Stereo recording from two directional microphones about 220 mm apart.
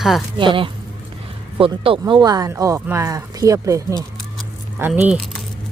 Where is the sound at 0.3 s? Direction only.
20° right (ahead or behind); by 5.2 s 5° right (ahead or behind).